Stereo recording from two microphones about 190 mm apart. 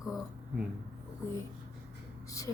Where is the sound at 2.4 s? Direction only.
15° left (ahead or behind).